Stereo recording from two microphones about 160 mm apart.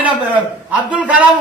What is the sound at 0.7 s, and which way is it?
Speech, 10° right (ahead or behind).